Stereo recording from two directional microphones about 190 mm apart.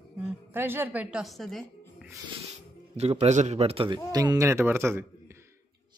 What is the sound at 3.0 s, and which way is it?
A man's voice, 35° right (ahead or behind).